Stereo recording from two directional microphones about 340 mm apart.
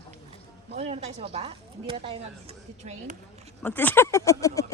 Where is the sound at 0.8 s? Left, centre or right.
Centre.